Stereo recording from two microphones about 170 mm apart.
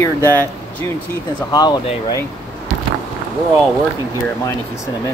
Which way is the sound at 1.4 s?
25° left (ahead or behind).